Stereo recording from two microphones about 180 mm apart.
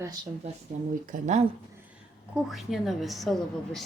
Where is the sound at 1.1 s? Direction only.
40° right (ahead or behind).